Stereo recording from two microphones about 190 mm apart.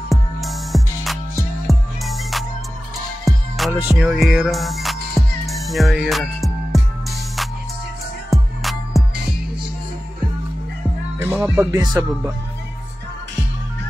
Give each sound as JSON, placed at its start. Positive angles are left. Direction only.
{"t": 0.1, "sound": "music", "side_deg": 0}
{"t": 11.1, "sound": "music", "side_deg": -10}
{"t": 11.7, "sound": "music", "side_deg": -20}